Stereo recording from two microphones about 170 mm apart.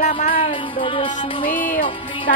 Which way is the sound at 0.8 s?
35° left (ahead or behind).